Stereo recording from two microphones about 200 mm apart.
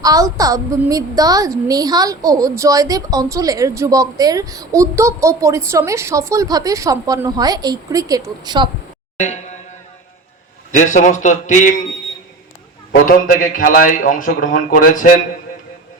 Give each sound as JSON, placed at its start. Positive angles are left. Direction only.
{"t": 0.0, "sound": "a woman's voice", "side_deg": -15}
{"t": 9.2, "sound": "a man's voice", "side_deg": 35}
{"t": 10.7, "sound": "a man's voice", "side_deg": 40}
{"t": 12.9, "sound": "a man's voice", "side_deg": 45}